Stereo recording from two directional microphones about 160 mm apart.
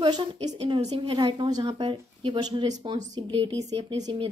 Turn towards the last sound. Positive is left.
turn(degrees=-30)  # may be behind; listen again after turning